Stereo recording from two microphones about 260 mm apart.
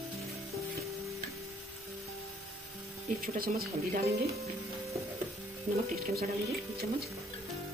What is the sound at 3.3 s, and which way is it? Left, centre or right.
Speech, right.